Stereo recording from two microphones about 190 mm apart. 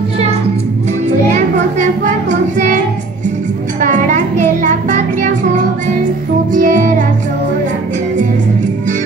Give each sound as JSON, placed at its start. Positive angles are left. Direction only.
{"t": 1.3, "sound": "child singing", "side_deg": -40}
{"t": 3.8, "sound": "child singing", "side_deg": -40}
{"t": 6.5, "sound": "music", "side_deg": -45}